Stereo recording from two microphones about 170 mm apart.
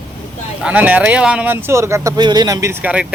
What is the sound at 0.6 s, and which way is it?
Speech, 10° right (ahead or behind).